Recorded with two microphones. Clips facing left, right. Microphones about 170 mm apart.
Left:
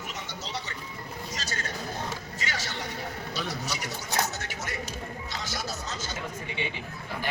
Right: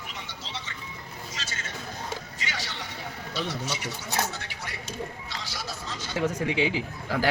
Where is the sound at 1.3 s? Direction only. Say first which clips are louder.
Left 3 dB; 40° left (ahead or behind).